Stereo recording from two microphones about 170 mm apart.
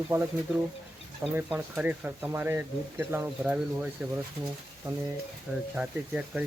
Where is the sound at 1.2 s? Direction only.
10° right (ahead or behind).